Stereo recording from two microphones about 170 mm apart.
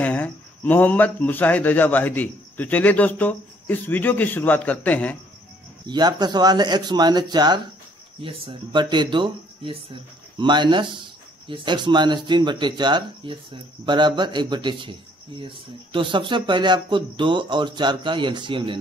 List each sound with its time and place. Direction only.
0.0 s speech: 10° left (ahead or behind)
5.9 s speech: 25° right (ahead or behind)